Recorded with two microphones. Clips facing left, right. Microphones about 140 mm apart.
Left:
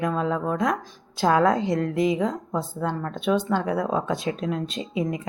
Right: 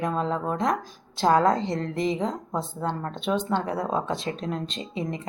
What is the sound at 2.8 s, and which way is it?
Speech, 25° right (ahead or behind).